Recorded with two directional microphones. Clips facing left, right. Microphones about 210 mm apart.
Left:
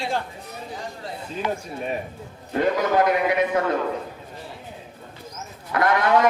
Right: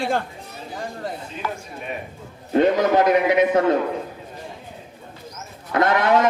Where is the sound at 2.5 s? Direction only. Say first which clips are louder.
Right 4 dB; 20° right (ahead or behind).